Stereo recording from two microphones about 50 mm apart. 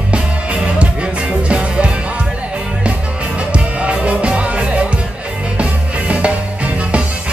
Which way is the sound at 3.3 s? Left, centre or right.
Right.